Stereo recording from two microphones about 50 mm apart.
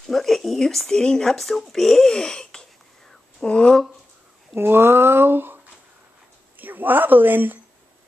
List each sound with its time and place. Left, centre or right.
0.0 s speech: centre; by 3.7 s left
4.6 s speech: right
6.6 s speech: right